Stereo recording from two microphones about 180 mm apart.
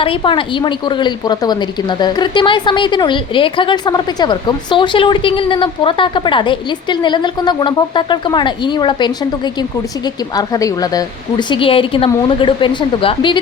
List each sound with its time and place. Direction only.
0.0 s a woman's voice: 30° left (ahead or behind)